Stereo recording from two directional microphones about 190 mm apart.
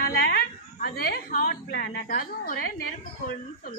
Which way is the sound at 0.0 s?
55° left (ahead or behind).